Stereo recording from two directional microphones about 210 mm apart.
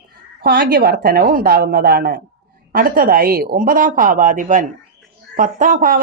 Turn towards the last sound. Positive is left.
turn(degrees=-40)  # may be behind; listen again after turning